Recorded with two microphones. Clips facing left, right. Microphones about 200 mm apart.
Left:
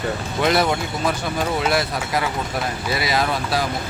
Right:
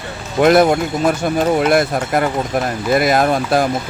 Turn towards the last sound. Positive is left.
turn(degrees=-50)  # may be behind; listen again after turning